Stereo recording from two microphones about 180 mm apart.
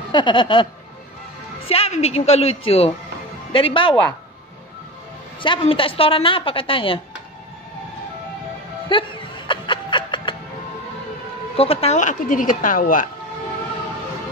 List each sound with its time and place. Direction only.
0.1 s a woman's voice: 25° left (ahead or behind)
1.7 s a woman's voice: 35° left (ahead or behind)
5.4 s a woman's voice: 30° left (ahead or behind)
8.8 s music: 25° left (ahead or behind)
11.5 s speech: 35° left (ahead or behind); by 13.0 s 50° left (ahead or behind)